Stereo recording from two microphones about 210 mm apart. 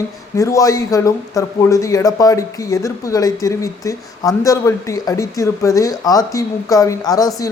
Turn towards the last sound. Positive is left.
turn(degrees=15)  # may be behind; listen again after turning